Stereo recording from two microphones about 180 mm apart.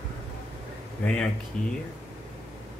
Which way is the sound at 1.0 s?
5° left (ahead or behind).